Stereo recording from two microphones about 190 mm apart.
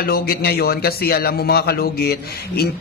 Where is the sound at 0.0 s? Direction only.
50° left (ahead or behind).